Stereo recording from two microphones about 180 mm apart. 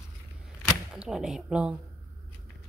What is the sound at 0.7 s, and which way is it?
Speech, centre (ahead or behind).